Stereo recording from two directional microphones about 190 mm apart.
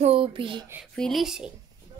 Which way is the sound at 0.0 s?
30° right (ahead or behind).